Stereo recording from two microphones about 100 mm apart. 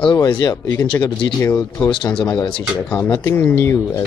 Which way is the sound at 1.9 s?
55° left (ahead or behind).